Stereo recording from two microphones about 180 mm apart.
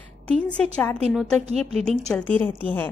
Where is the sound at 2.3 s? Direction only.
10° left (ahead or behind).